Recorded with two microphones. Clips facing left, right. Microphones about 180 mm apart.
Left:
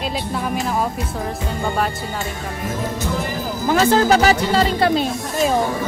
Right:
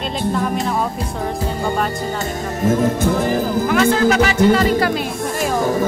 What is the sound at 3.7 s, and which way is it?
Speech, 35° left (ahead or behind).